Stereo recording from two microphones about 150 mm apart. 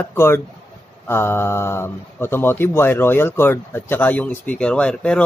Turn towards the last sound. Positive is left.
turn(degrees=5)  # may be behind; listen again after turning